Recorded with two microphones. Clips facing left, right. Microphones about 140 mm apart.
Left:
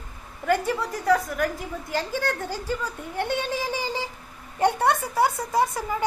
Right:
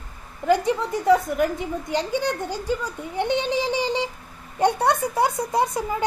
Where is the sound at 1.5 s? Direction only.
Centre (ahead or behind).